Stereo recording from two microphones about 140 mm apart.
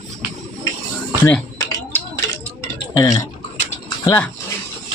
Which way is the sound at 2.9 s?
25° left (ahead or behind).